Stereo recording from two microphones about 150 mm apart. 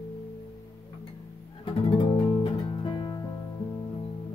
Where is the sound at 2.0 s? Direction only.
40° left (ahead or behind).